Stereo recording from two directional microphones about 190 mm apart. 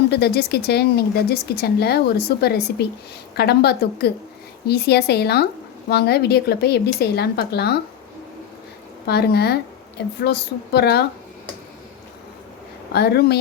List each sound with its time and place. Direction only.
0.1 s speech: 60° left (ahead or behind)
9.0 s speech: 55° left (ahead or behind)
12.9 s speech: 55° left (ahead or behind)